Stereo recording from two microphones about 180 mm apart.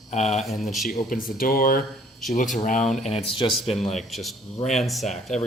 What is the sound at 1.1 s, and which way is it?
Speech, 55° left (ahead or behind).